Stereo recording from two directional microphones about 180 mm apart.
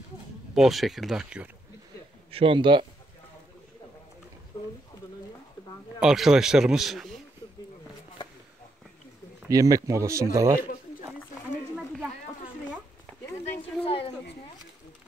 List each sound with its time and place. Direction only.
0.6 s speech: centre (ahead or behind)
2.3 s a man's voice: 30° right (ahead or behind)
4.5 s speech: 20° left (ahead or behind)
5.9 s speech: 5° right (ahead or behind)
9.4 s speech: 20° right (ahead or behind)
13.4 s a sound: 30° left (ahead or behind)